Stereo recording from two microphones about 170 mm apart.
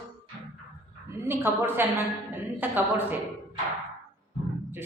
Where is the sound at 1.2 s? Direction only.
15° right (ahead or behind).